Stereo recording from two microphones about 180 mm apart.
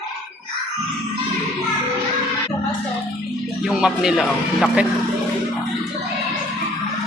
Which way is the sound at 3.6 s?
Centre (ahead or behind).